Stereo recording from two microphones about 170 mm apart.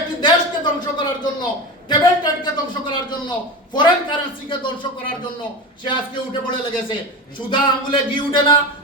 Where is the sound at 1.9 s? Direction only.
25° left (ahead or behind).